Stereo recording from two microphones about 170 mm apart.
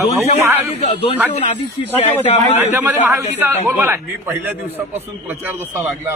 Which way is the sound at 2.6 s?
15° right (ahead or behind).